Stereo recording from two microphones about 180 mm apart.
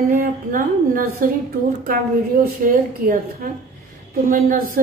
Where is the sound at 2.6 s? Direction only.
45° right (ahead or behind).